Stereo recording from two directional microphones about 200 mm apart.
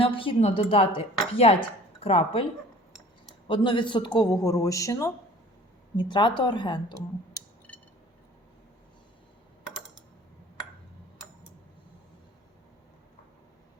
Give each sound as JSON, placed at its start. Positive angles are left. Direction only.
{"t": 0.0, "sound": "speech", "side_deg": 25}
{"t": 3.4, "sound": "speech", "side_deg": 25}